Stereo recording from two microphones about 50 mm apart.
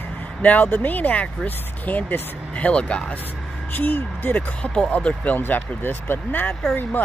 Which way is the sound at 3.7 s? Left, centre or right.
Left.